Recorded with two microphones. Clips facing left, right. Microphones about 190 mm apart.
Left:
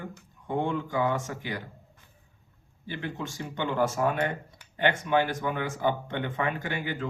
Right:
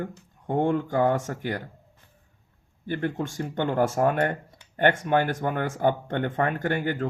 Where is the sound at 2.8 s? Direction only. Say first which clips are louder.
Right 7 dB; 50° right (ahead or behind).